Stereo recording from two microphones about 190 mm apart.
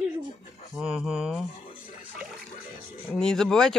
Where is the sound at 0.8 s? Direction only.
Centre (ahead or behind).